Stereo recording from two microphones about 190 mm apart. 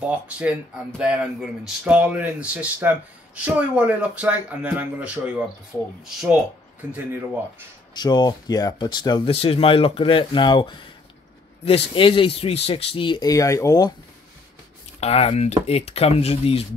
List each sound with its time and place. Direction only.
0.4 s speech: 5° right (ahead or behind)
6.9 s speech: 10° right (ahead or behind)
7.9 s speech: 20° left (ahead or behind)
15.0 s speech: 30° left (ahead or behind)